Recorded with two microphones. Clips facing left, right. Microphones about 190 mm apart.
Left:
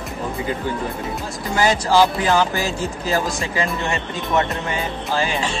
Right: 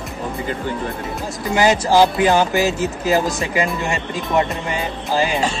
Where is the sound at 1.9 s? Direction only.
20° right (ahead or behind).